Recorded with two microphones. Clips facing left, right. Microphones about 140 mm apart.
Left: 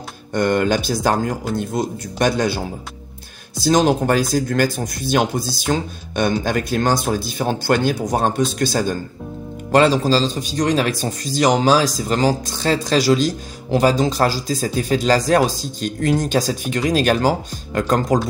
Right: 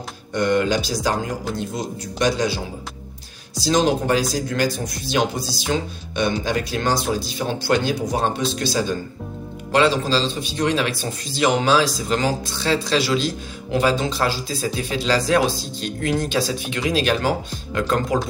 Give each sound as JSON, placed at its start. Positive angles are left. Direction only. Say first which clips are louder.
{"t": 0.3, "sound": "a man's voice", "louder": "left 2 dB", "side_deg": 50}